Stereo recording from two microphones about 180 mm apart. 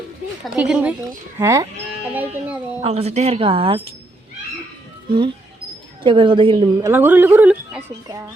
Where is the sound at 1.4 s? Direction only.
15° right (ahead or behind).